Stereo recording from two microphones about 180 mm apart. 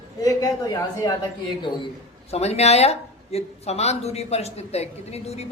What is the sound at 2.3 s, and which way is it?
Speech, 35° left (ahead or behind).